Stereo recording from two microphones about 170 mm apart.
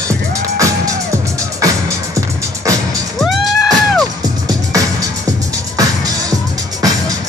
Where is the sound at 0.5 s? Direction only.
20° right (ahead or behind).